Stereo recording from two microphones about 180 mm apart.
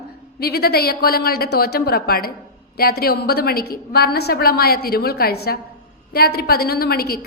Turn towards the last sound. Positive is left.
turn(degrees=60)  # may be behind; listen again after turning